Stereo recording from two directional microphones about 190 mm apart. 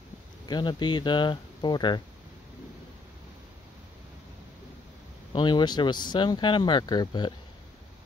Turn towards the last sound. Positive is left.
turn(degrees=20)  # may be behind; listen again after turning